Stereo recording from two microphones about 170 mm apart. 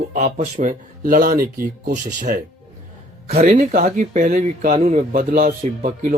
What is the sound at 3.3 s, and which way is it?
Speech, 40° right (ahead or behind).